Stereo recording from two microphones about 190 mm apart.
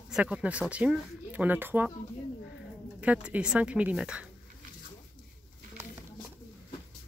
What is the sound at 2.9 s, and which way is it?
Speech, 5° right (ahead or behind).